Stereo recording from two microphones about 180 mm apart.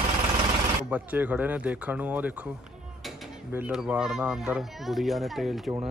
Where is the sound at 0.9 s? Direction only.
10° right (ahead or behind).